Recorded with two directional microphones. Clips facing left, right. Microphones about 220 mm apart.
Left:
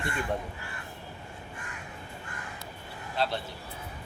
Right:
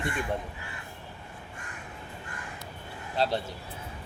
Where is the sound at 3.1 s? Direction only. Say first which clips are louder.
Right 3 dB; 40° right (ahead or behind).